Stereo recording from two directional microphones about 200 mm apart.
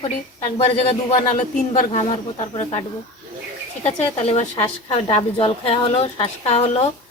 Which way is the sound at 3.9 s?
30° left (ahead or behind).